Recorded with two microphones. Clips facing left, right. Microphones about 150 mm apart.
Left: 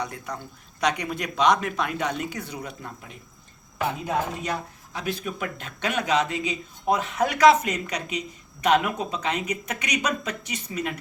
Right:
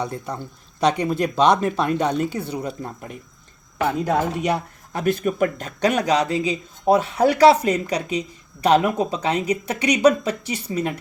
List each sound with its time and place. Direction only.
0.0 s speech: 30° right (ahead or behind)
4.0 s speech: 70° right (ahead or behind); by 10.9 s 35° right (ahead or behind)